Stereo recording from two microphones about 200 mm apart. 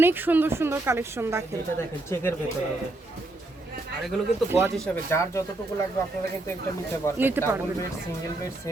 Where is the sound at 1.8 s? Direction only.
10° left (ahead or behind).